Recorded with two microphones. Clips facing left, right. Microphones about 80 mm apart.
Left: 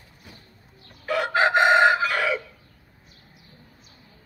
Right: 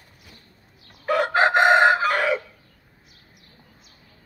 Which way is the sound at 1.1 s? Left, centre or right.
Right.